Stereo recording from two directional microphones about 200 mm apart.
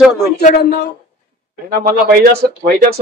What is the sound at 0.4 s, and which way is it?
Speech, 45° left (ahead or behind).